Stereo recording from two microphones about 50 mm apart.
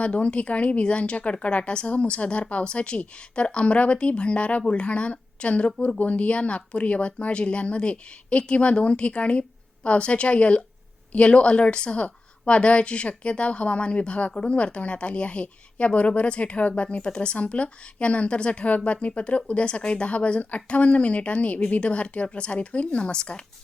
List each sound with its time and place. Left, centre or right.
0.0 s a woman's voice: left